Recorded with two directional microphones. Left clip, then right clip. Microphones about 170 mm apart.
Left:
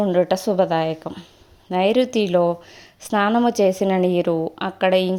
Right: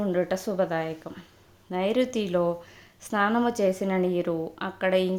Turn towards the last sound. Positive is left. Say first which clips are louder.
# left 6 dB
turn(degrees=30)  # may be behind; listen again after turning